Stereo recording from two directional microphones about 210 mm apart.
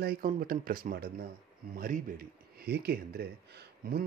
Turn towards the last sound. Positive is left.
turn(degrees=-50)  # may be behind; listen again after turning